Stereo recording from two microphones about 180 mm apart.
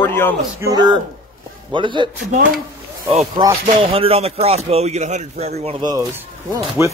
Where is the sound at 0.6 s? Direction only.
20° right (ahead or behind).